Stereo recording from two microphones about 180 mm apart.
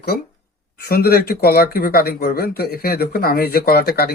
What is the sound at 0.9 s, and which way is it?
Speech, 55° left (ahead or behind).